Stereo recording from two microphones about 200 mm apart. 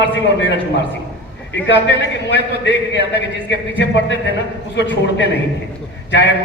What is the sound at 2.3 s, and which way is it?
A man's voice, 60° left (ahead or behind).